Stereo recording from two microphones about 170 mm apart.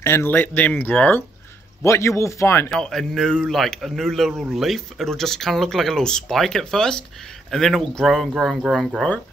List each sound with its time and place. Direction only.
0.0 s speech: 15° left (ahead or behind)
2.7 s a man's voice: centre (ahead or behind)